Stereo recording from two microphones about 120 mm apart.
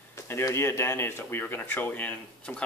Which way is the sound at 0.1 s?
20° left (ahead or behind).